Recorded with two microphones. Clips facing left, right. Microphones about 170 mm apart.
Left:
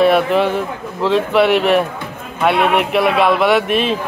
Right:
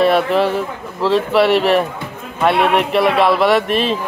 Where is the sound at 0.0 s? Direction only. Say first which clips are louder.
Left 1 dB; centre (ahead or behind).